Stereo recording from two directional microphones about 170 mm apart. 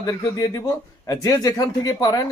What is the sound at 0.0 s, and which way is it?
A man's voice, 20° left (ahead or behind).